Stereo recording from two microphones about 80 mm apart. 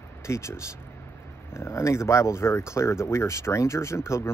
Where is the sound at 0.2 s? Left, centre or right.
Left.